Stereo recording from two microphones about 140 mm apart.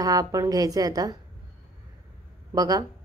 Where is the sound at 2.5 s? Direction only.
25° right (ahead or behind).